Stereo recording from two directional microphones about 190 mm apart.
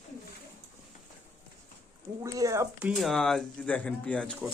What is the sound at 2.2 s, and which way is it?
Speech, 15° right (ahead or behind).